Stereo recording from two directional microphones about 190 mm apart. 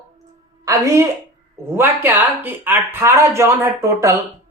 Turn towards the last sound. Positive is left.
turn(degrees=-15)  # may be behind; listen again after turning